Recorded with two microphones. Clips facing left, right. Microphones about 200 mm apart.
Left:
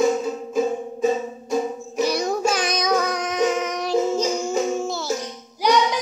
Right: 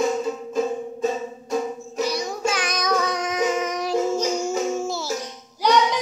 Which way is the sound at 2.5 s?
30° left (ahead or behind).